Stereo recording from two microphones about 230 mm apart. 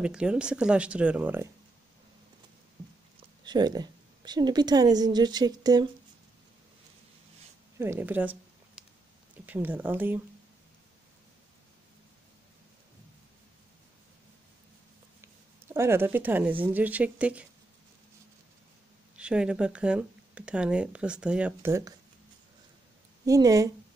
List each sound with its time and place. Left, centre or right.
0.0 s speech: centre
3.4 s a woman's voice: centre
7.8 s a sound: centre
9.5 s a woman's voice: centre
15.7 s a woman's voice: centre
19.1 s speech: centre
23.2 s a woman's voice: centre